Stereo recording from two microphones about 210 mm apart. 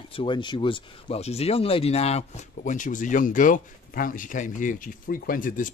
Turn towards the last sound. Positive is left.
turn(degrees=40)  # may be behind; listen again after turning